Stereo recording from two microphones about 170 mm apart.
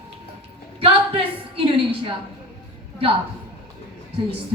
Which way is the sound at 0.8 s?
35° right (ahead or behind).